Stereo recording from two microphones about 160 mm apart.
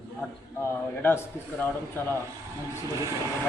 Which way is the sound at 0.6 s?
15° left (ahead or behind).